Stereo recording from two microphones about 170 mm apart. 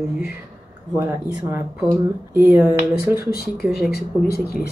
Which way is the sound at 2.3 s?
15° right (ahead or behind).